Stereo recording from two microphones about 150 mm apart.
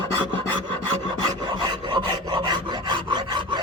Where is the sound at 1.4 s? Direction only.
30° right (ahead or behind).